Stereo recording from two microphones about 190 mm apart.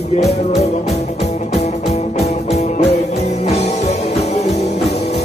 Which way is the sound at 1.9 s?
35° left (ahead or behind).